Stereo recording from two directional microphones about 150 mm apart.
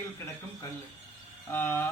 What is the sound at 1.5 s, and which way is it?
Speech, 15° left (ahead or behind).